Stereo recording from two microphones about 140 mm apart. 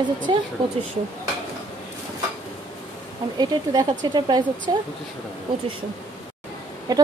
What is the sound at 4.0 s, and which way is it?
Speech, 30° right (ahead or behind).